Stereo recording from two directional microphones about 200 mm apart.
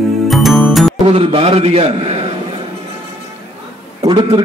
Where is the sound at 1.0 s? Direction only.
30° right (ahead or behind).